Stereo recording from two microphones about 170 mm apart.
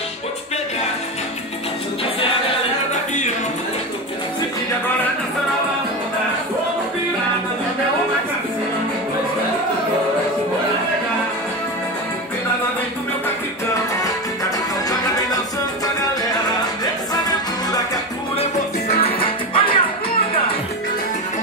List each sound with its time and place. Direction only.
14.9 s music: 20° left (ahead or behind)
18.4 s music: 35° left (ahead or behind)